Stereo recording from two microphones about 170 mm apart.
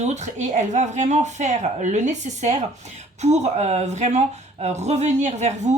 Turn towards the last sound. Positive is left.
turn(degrees=-40)  # may be behind; listen again after turning